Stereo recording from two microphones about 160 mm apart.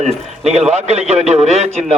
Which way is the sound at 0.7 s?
45° right (ahead or behind).